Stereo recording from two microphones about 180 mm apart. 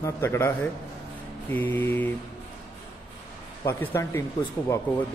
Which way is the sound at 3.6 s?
10° left (ahead or behind).